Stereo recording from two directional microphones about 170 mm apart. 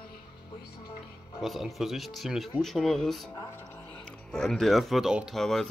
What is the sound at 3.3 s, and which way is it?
Speech, 15° left (ahead or behind).